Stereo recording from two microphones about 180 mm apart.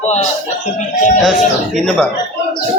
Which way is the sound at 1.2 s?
Centre (ahead or behind).